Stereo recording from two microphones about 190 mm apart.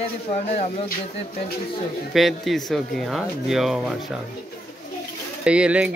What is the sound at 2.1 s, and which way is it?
Speech, centre (ahead or behind).